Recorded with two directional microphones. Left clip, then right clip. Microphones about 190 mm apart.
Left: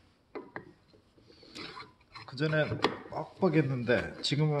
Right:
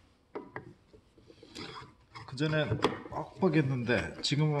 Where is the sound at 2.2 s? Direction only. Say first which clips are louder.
Left 2 dB; 15° left (ahead or behind).